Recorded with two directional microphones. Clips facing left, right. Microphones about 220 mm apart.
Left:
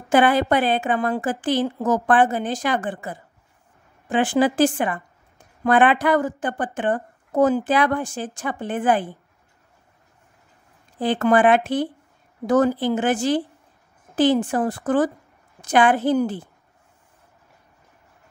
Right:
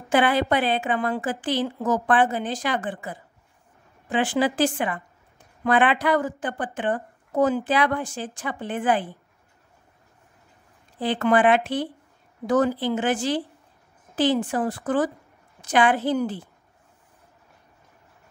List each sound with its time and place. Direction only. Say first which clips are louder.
0.1 s a woman's voice: left 3 dB; 45° left (ahead or behind)
11.0 s a woman's voice: left 3 dB; 45° left (ahead or behind)